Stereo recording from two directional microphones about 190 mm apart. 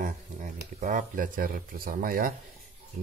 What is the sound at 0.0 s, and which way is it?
Speech, 45° right (ahead or behind).